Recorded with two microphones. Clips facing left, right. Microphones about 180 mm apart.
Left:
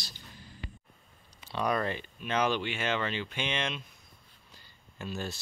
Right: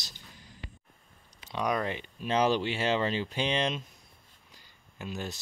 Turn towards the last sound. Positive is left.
turn(degrees=-15)  # may be behind; listen again after turning